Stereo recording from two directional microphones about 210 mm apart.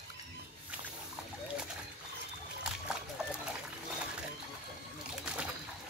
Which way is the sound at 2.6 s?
5° right (ahead or behind).